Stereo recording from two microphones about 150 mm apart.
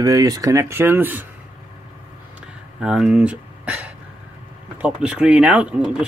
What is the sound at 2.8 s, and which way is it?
Speech, 5° right (ahead or behind).